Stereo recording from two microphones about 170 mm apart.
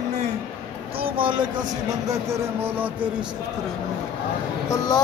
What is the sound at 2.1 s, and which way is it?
Speech, 15° right (ahead or behind).